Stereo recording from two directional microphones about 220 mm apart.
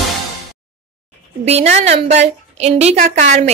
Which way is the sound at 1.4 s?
30° right (ahead or behind).